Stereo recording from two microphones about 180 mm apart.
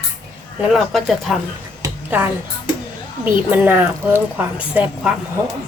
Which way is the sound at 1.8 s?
10° right (ahead or behind).